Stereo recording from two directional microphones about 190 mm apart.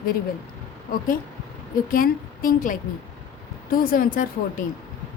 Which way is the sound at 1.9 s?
45° left (ahead or behind).